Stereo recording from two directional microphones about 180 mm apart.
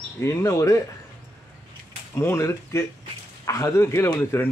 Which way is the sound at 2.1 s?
15° left (ahead or behind).